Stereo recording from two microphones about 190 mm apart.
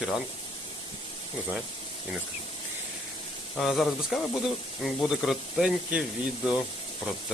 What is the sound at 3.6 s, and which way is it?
Speech, centre (ahead or behind).